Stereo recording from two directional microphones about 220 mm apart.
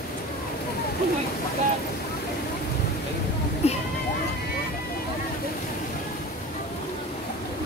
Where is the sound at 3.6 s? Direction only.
30° left (ahead or behind).